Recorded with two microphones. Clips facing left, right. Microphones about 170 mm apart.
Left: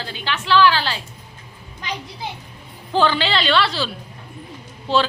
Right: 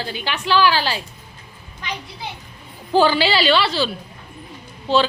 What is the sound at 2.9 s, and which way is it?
A woman's voice, 10° right (ahead or behind).